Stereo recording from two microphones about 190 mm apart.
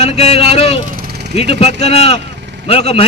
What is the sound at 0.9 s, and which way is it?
Vehicle, 55° right (ahead or behind).